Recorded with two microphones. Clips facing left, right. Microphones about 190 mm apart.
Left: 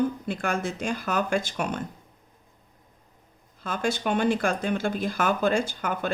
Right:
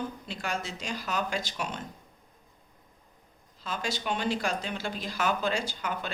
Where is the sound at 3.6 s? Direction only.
50° left (ahead or behind).